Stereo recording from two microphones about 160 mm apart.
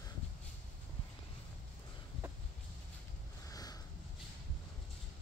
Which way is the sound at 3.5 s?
25° left (ahead or behind).